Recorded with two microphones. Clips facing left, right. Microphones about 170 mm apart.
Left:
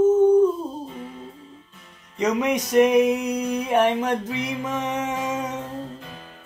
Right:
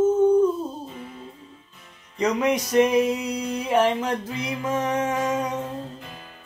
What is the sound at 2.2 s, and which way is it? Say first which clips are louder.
Speech: even; 20° left (ahead or behind).